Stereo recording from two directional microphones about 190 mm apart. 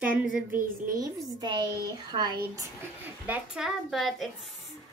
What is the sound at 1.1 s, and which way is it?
A woman's voice, 20° right (ahead or behind).